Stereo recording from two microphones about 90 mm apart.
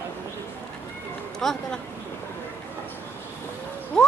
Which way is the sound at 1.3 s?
5° left (ahead or behind).